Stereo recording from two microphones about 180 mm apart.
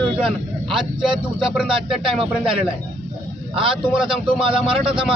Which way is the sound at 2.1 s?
30° right (ahead or behind).